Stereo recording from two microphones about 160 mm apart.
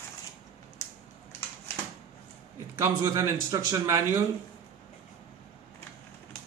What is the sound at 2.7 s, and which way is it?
Speech, 15° right (ahead or behind).